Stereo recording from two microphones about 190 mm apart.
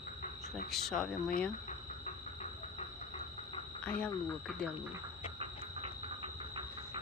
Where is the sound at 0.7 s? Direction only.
Centre (ahead or behind).